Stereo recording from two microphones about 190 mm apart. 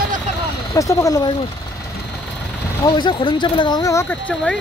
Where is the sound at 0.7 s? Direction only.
15° left (ahead or behind).